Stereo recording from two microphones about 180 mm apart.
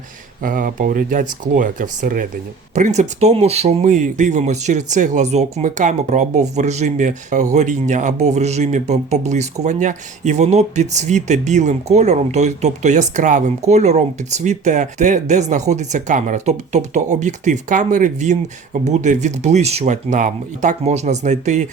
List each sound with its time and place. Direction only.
0.4 s speech: 50° right (ahead or behind)